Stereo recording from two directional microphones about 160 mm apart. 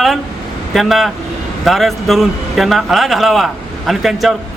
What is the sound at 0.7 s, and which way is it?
A man's voice, centre (ahead or behind).